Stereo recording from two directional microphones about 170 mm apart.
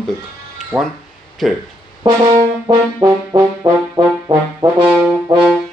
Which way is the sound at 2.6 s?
25° right (ahead or behind).